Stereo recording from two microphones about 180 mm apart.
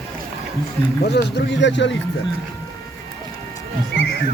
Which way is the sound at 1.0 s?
70° left (ahead or behind).